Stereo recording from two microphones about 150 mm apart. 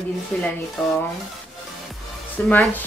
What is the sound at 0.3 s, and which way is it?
Speech, 10° left (ahead or behind).